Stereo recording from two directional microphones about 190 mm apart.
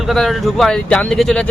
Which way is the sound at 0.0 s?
Centre (ahead or behind).